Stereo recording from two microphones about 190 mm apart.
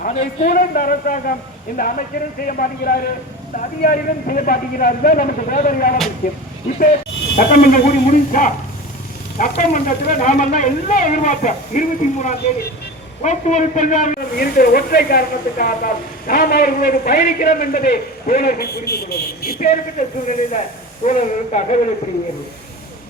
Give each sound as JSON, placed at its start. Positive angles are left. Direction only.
{"t": 0.0, "sound": "a man's voice", "side_deg": 35}
{"t": 9.6, "sound": "a man's voice", "side_deg": 40}
{"t": 19.5, "sound": "speech", "side_deg": 40}